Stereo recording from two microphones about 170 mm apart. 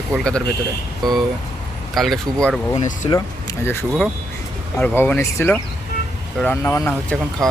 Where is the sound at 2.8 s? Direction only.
45° left (ahead or behind).